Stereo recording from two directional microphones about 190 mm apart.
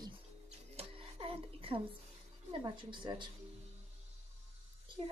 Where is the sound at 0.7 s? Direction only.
30° right (ahead or behind).